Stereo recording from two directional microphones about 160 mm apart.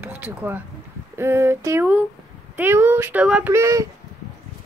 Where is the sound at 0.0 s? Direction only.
10° right (ahead or behind).